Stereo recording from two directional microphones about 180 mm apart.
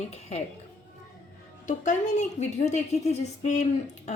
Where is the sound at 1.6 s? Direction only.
40° left (ahead or behind).